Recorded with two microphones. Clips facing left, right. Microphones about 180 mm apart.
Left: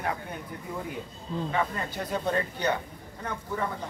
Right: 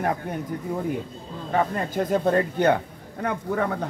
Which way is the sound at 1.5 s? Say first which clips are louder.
Right 8 dB; 45° right (ahead or behind).